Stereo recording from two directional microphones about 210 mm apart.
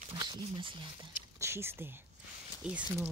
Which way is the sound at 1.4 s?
10° right (ahead or behind).